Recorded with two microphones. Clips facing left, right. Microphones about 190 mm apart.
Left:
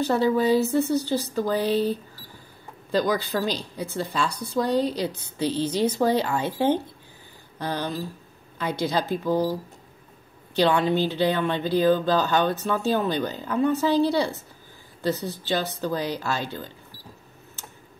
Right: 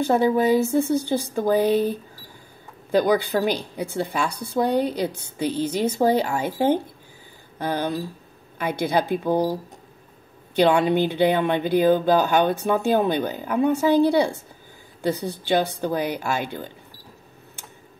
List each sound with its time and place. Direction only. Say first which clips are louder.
0.1 s speech: right 2 dB; 15° right (ahead or behind)
0.8 s a woman's voice: right 2 dB; 55° right (ahead or behind)
2.9 s a woman's voice: right 4 dB; 55° right (ahead or behind)
5.4 s speech: even; 10° right (ahead or behind)
10.6 s speech: right 3 dB; 15° right (ahead or behind)
13.9 s a woman's voice: right 6 dB; 55° right (ahead or behind)
15.0 s speech: right 2 dB; 15° right (ahead or behind)